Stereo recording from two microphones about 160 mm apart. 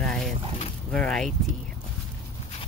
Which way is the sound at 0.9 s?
5° left (ahead or behind).